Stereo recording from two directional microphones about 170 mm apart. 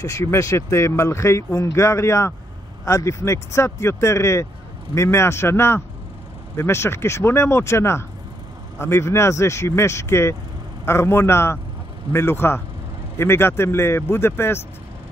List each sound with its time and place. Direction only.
0.0 s speech: 15° left (ahead or behind)